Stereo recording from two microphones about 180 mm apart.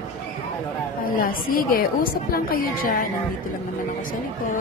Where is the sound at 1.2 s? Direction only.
55° left (ahead or behind).